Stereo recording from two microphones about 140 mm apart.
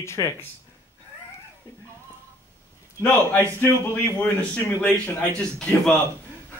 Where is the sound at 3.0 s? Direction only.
10° left (ahead or behind).